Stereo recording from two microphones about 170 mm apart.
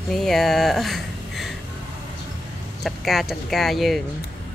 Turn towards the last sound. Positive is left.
turn(degrees=0)  # may be behind; listen again after turning